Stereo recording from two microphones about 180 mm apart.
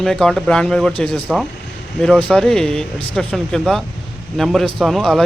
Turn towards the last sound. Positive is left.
turn(degrees=0)  # may be behind; listen again after turning